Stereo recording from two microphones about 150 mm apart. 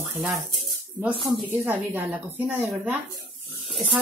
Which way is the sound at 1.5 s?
10° right (ahead or behind).